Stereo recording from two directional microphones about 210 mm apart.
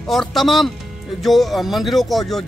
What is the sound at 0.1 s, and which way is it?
Speech, centre (ahead or behind).